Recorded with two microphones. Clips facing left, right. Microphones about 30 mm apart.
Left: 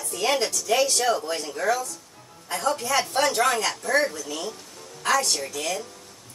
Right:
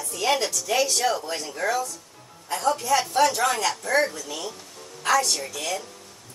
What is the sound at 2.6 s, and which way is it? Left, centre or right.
Speech, centre.